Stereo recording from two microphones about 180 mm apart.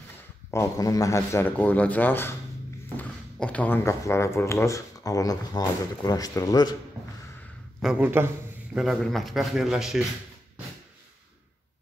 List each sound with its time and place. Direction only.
0.5 s speech: 15° left (ahead or behind)
7.8 s a man's voice: 5° right (ahead or behind)
8.7 s a man's voice: centre (ahead or behind)